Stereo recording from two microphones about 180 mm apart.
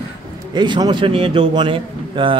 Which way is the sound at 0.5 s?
25° right (ahead or behind).